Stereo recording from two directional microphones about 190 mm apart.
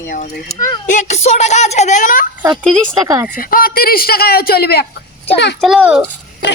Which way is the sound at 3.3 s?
50° left (ahead or behind).